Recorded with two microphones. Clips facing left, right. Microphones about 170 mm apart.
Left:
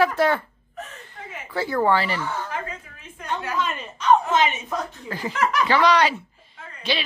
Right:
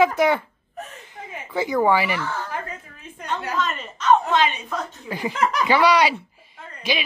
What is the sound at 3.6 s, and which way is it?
A woman's voice, 10° left (ahead or behind).